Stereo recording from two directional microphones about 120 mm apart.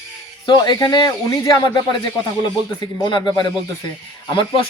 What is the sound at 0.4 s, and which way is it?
A man's voice, 35° left (ahead or behind).